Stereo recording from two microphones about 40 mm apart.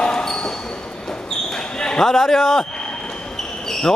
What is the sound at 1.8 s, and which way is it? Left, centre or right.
Speech, centre.